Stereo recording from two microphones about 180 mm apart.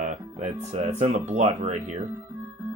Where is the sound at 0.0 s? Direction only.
40° right (ahead or behind).